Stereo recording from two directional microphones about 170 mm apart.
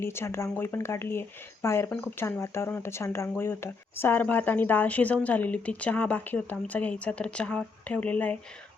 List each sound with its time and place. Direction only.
0.0 s speech: 15° left (ahead or behind)